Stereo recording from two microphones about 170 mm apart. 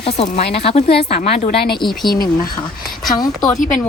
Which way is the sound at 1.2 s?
50° left (ahead or behind).